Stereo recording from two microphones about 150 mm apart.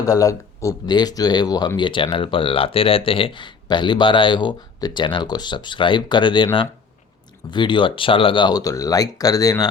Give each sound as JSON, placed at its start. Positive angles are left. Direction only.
{"t": 0.0, "sound": "speech", "side_deg": 25}